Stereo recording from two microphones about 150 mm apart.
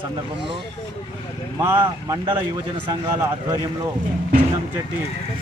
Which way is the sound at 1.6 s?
15° right (ahead or behind).